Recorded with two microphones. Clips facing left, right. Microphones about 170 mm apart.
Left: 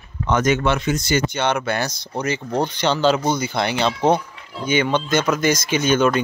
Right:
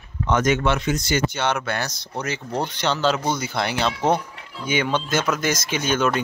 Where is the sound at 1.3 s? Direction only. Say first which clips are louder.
Left 3 dB; 5° right (ahead or behind).